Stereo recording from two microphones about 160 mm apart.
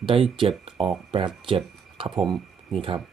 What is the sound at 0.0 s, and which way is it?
Speech, 35° right (ahead or behind).